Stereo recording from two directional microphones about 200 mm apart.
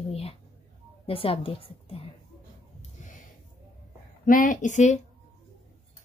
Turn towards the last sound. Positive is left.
turn(degrees=35)  # may be behind; listen again after turning